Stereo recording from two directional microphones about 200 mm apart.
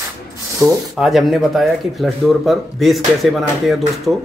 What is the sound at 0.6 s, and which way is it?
Speech, centre (ahead or behind).